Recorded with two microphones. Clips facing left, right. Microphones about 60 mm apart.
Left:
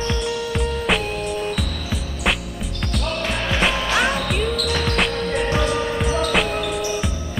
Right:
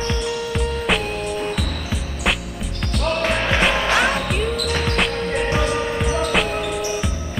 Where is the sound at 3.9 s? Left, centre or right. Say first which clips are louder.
Right 1 dB; centre.